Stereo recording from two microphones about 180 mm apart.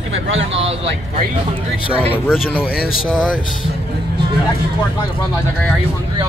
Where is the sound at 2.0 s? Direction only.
10° left (ahead or behind).